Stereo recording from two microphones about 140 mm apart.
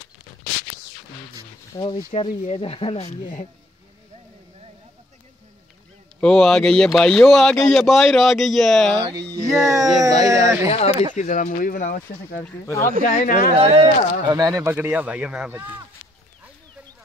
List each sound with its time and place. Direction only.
1.7 s speech: 40° left (ahead or behind)
6.2 s speech: 5° left (ahead or behind)
9.4 s speech: 20° right (ahead or behind)
10.7 s speech: 50° left (ahead or behind)
11.1 s speech: 65° left (ahead or behind)
12.4 s speech: 15° left (ahead or behind)
13.1 s speech: 75° left (ahead or behind)
13.6 s speech: 45° right (ahead or behind)
14.3 s speech: 25° right (ahead or behind)
14.7 s speech: 15° right (ahead or behind)